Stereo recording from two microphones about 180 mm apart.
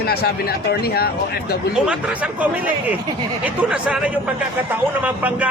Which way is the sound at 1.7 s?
5° right (ahead or behind).